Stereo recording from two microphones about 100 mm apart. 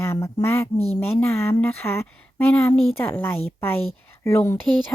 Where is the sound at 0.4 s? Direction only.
25° left (ahead or behind).